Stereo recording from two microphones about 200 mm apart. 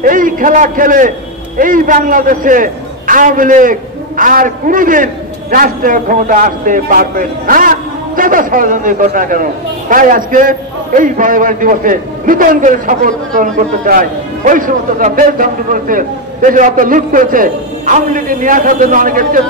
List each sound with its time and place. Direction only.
0.0 s a man's voice: 45° right (ahead or behind)